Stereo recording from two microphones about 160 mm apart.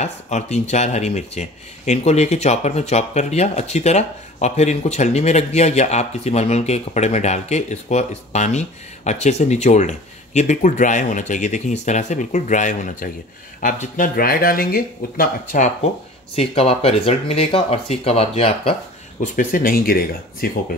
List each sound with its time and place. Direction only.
0.0 s speech: 45° left (ahead or behind)
16.3 s speech: 40° left (ahead or behind)
19.3 s speech: 60° left (ahead or behind)